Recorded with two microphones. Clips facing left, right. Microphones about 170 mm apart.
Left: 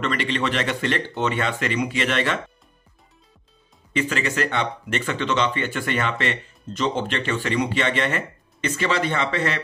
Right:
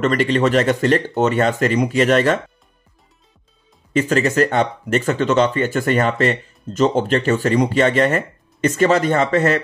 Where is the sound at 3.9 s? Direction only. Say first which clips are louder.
Right 7 dB; 40° right (ahead or behind).